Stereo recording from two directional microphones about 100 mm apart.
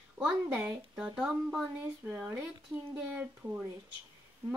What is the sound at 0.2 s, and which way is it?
Speech, 10° right (ahead or behind).